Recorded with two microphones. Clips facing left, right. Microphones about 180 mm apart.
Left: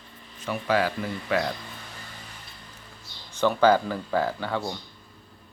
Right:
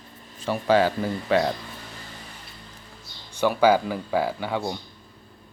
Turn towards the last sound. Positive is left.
turn(degrees=-15)  # may be behind; listen again after turning